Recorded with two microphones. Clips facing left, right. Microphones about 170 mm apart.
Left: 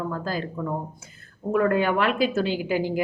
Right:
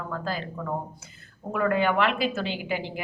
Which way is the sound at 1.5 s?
45° left (ahead or behind).